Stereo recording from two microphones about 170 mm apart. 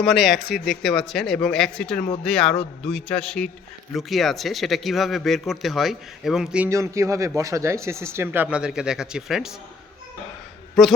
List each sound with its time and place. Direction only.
0.0 s speech: centre (ahead or behind)
6.7 s speech: 15° right (ahead or behind)